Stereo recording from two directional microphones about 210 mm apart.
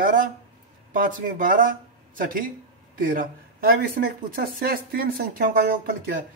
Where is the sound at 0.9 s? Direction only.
40° right (ahead or behind).